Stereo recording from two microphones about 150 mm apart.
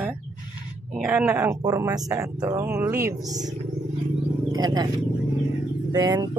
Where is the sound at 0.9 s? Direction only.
10° right (ahead or behind).